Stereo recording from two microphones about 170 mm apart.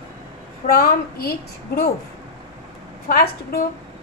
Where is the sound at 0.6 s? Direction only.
60° left (ahead or behind).